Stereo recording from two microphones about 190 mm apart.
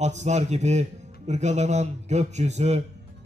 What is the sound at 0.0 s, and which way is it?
A man's voice, 35° right (ahead or behind).